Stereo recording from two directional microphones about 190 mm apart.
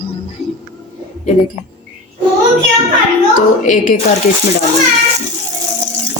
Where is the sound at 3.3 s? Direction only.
45° left (ahead or behind).